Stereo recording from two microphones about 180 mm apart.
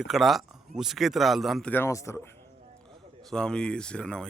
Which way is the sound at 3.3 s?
5° left (ahead or behind).